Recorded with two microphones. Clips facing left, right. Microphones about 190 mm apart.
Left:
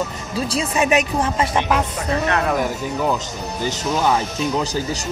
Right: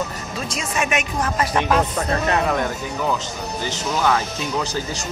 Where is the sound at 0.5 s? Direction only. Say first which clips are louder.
Left 5 dB; 35° left (ahead or behind).